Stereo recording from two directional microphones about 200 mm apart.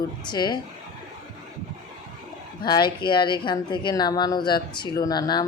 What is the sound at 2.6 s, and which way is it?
Speech, 20° left (ahead or behind).